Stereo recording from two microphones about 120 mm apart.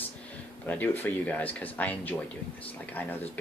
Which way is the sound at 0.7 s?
15° left (ahead or behind).